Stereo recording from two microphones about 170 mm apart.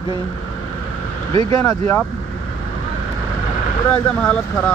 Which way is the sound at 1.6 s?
15° left (ahead or behind).